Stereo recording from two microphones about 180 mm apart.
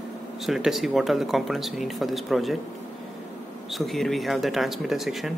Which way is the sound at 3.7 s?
Centre (ahead or behind).